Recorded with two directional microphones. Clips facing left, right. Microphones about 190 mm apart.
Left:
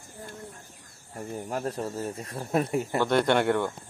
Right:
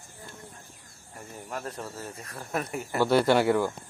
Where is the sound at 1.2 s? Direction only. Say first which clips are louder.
Left 6 dB; 40° left (ahead or behind).